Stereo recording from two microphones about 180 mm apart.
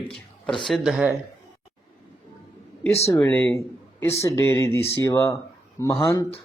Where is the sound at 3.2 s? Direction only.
5° left (ahead or behind).